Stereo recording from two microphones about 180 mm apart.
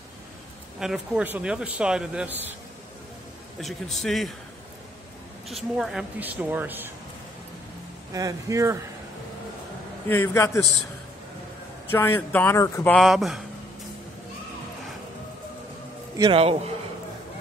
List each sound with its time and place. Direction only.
0.7 s speech: 5° right (ahead or behind)
3.6 s speech: centre (ahead or behind)
5.5 s a woman's voice: centre (ahead or behind)
8.1 s speech: 20° right (ahead or behind)
10.0 s speech: 10° left (ahead or behind)
11.9 s speech: 10° left (ahead or behind)
16.2 s speech: 30° right (ahead or behind)